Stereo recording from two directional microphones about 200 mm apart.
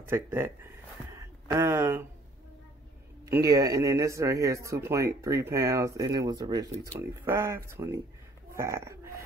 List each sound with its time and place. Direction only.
0.0 s speech: 15° right (ahead or behind)
1.1 s a sound: 15° right (ahead or behind)
3.3 s speech: 15° right (ahead or behind)